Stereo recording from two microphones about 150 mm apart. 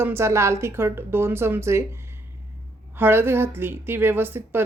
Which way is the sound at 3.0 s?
15° right (ahead or behind).